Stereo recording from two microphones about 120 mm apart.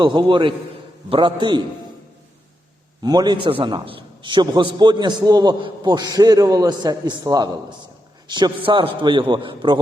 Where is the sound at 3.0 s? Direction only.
35° right (ahead or behind).